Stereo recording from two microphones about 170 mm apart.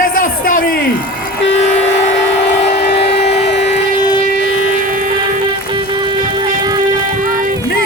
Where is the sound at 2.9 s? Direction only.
80° left.